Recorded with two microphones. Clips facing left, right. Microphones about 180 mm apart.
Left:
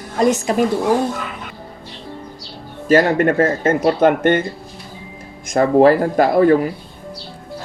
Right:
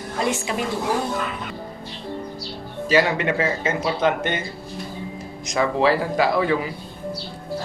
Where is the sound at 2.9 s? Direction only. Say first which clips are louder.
Left 6 dB; 50° left (ahead or behind).